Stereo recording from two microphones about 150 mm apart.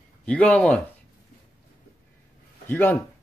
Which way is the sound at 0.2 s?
10° left (ahead or behind).